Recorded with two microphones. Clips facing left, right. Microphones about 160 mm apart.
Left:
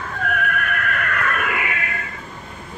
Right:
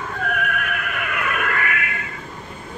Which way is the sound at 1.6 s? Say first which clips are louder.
Right 2 dB; 25° left (ahead or behind).